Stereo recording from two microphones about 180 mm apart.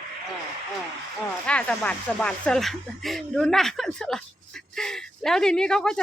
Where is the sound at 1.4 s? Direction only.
5° left (ahead or behind).